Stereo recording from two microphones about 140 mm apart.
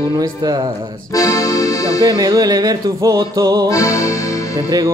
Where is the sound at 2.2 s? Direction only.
25° right (ahead or behind).